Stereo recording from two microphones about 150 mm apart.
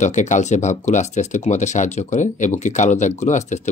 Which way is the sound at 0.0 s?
55° left (ahead or behind).